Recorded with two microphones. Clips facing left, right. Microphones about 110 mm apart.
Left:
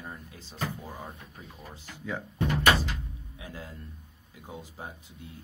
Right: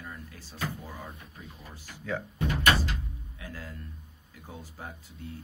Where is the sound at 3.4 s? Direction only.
20° left (ahead or behind).